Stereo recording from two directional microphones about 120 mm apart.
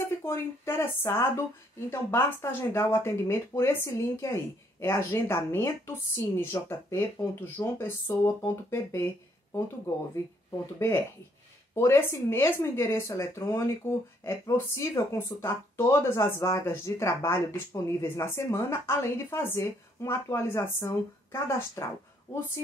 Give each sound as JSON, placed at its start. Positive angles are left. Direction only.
{"t": 0.0, "sound": "speech", "side_deg": 20}
{"t": 11.7, "sound": "speech", "side_deg": 20}